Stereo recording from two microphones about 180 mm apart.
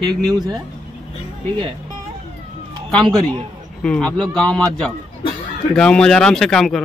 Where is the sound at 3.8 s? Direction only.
5° left (ahead or behind).